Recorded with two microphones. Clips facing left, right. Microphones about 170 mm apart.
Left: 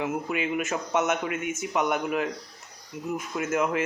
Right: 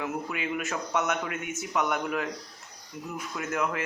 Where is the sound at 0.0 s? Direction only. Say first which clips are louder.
Left 4 dB; 20° left (ahead or behind).